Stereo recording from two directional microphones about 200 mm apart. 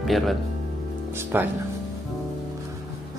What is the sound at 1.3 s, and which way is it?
Speech, 10° right (ahead or behind).